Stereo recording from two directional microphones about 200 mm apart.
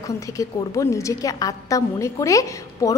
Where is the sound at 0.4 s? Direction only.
15° left (ahead or behind).